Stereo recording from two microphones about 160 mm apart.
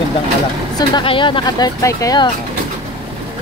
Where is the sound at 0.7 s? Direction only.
30° left (ahead or behind).